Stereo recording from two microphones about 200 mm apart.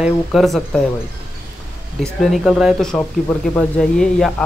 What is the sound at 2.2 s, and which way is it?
Speech, centre (ahead or behind).